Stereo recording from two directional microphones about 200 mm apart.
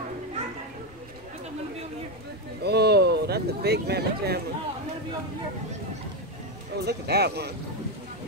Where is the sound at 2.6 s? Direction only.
55° right (ahead or behind).